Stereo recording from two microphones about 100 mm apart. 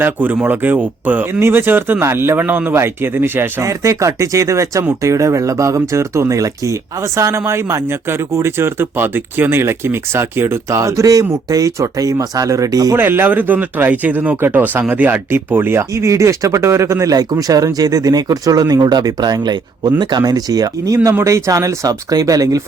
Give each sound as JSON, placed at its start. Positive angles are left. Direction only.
{"t": 0.0, "sound": "speech", "side_deg": -20}
{"t": 3.6, "sound": "speech", "side_deg": -30}
{"t": 13.0, "sound": "speech", "side_deg": -20}